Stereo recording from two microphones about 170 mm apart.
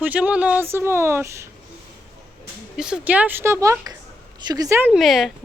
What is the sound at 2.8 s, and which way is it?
Speech, 5° right (ahead or behind).